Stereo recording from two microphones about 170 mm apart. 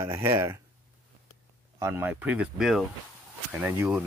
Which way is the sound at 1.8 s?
15° right (ahead or behind).